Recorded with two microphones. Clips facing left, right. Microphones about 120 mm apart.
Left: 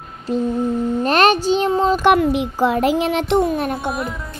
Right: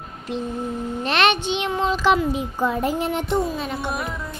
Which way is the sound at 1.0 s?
40° left (ahead or behind).